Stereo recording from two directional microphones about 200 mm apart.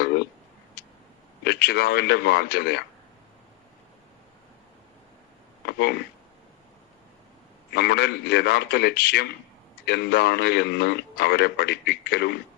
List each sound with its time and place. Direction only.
0.8 s a sound: 50° left (ahead or behind)
1.5 s a man's voice: 55° left (ahead or behind)
5.6 s a man's voice: 55° left (ahead or behind)
7.7 s a man's voice: 55° left (ahead or behind)